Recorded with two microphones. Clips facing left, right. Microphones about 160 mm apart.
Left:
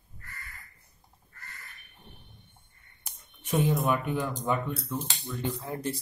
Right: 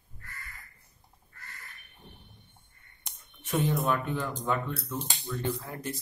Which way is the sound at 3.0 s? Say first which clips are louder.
Even; 15° left (ahead or behind).